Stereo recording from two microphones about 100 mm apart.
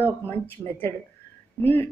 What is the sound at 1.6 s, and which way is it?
Speech, 20° left (ahead or behind).